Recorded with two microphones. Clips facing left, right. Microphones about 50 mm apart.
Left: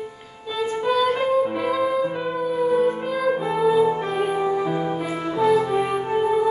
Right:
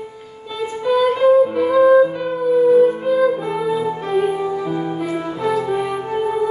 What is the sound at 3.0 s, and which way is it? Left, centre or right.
Music, centre.